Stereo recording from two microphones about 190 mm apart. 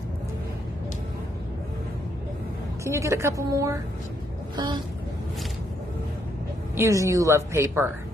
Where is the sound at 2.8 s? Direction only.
15° right (ahead or behind).